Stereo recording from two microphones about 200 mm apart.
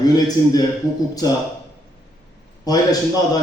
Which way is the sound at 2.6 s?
20° left (ahead or behind).